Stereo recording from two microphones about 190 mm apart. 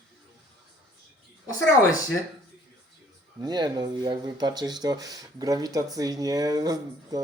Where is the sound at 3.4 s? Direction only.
20° right (ahead or behind).